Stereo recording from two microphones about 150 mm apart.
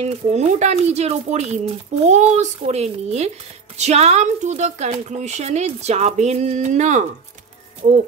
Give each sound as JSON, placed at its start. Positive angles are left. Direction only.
{"t": 0.0, "sound": "a woman's voice", "side_deg": -50}